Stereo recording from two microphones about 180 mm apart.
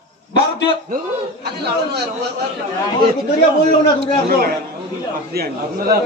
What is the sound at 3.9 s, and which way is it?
A man's voice, 55° right (ahead or behind).